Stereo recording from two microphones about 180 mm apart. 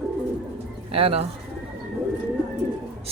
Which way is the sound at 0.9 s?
30° right (ahead or behind).